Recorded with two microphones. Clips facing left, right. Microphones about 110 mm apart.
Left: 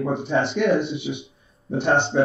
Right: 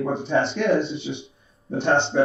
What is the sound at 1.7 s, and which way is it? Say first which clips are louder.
Speech: even; 10° left (ahead or behind).